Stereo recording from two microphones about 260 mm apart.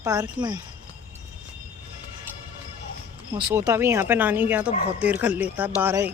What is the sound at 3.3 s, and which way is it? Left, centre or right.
Speech, centre.